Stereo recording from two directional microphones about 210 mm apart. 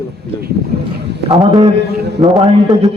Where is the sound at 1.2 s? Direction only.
25° right (ahead or behind).